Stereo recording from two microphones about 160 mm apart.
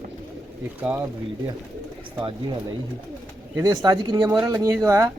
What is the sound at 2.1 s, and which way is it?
Speech, 30° right (ahead or behind).